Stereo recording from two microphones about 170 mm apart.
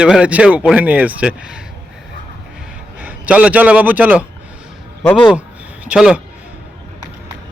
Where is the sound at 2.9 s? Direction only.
10° right (ahead or behind).